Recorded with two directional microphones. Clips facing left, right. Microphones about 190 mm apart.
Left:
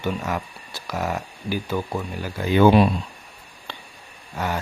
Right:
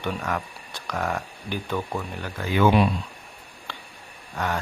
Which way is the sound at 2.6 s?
35° left (ahead or behind).